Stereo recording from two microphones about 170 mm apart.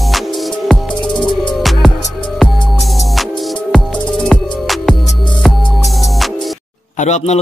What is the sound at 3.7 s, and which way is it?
Music, centre (ahead or behind).